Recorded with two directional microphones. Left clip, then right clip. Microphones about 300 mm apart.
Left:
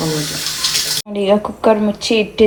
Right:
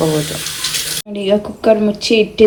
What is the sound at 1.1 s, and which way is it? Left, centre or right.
Speech, centre.